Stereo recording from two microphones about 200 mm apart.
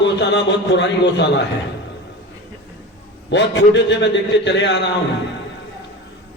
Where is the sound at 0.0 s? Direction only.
60° left (ahead or behind).